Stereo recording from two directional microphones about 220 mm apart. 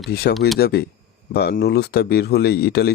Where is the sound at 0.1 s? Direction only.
45° left (ahead or behind).